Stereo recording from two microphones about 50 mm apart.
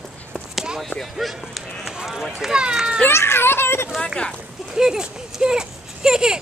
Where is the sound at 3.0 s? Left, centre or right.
Left.